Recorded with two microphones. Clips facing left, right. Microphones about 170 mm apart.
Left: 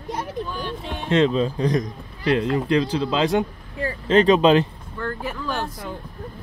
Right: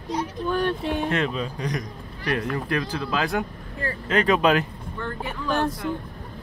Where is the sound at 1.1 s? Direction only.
25° left (ahead or behind).